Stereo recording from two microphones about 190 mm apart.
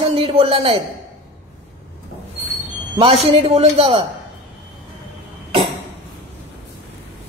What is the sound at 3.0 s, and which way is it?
Speech, 30° right (ahead or behind).